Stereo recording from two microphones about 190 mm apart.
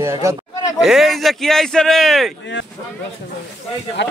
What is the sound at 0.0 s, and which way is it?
Speech, 15° right (ahead or behind).